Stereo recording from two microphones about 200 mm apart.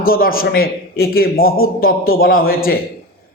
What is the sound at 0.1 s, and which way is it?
A man's voice, 45° left (ahead or behind).